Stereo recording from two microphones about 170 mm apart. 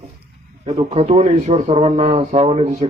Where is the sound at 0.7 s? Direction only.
40° right (ahead or behind).